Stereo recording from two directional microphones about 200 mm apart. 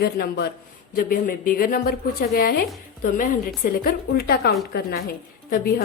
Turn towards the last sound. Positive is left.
turn(degrees=50)  # may be behind; listen again after turning